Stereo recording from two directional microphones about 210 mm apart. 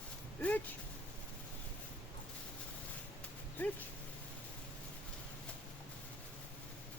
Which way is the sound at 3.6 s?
10° left (ahead or behind).